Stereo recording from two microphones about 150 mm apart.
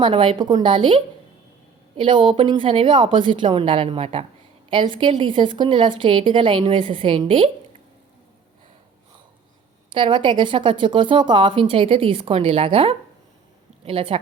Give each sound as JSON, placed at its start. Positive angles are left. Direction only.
{"t": 0.0, "sound": "a woman's voice", "side_deg": -35}
{"t": 9.9, "sound": "a woman's voice", "side_deg": -35}